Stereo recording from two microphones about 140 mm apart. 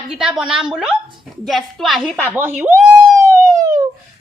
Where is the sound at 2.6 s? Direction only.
15° right (ahead or behind).